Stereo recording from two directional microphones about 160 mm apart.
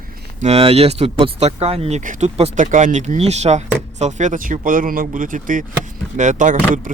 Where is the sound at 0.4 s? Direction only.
40° right (ahead or behind).